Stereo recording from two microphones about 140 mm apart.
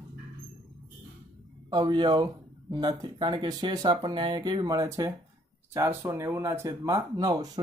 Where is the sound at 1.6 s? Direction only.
30° right (ahead or behind).